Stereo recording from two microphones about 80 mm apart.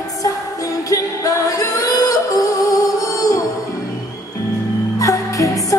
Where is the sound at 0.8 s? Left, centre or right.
Left.